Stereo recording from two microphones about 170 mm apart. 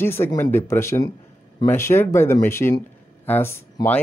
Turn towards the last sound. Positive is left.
turn(degrees=15)  # may be behind; listen again after turning